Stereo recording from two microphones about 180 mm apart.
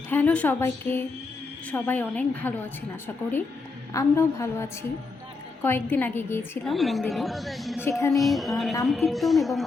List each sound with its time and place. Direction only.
0.1 s a woman's voice: 10° left (ahead or behind)
3.9 s a woman's voice: 15° left (ahead or behind)
6.7 s speech: centre (ahead or behind)
7.8 s a woman's voice: 15° left (ahead or behind)
8.1 s speech: centre (ahead or behind)